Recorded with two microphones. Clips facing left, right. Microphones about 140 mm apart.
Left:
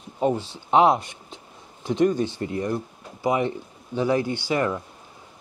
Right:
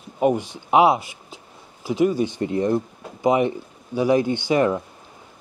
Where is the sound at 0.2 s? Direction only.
15° right (ahead or behind).